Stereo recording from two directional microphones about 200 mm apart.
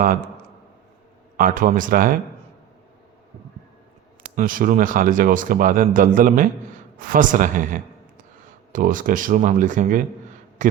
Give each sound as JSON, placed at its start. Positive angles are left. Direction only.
{"t": 1.4, "sound": "speech", "side_deg": -45}
{"t": 4.4, "sound": "speech", "side_deg": -45}